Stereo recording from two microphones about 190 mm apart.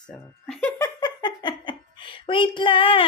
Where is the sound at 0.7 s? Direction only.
20° left (ahead or behind).